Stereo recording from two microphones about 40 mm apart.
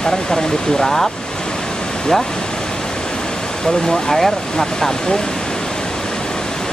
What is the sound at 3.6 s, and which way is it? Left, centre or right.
Speech, centre.